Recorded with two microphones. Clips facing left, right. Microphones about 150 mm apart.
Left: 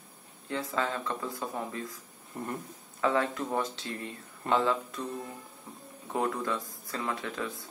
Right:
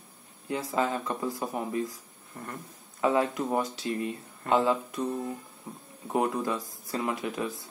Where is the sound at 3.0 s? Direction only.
20° right (ahead or behind).